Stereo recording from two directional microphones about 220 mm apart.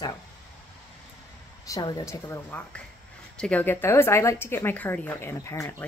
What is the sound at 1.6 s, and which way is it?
Speech, 15° left (ahead or behind).